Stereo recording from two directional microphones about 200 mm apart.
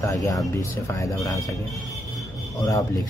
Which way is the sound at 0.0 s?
15° left (ahead or behind).